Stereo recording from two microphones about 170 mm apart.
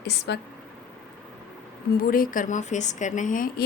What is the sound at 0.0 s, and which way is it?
Speech, 75° left (ahead or behind).